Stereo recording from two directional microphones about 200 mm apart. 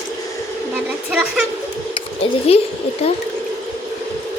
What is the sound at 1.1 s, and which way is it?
Speech, centre (ahead or behind).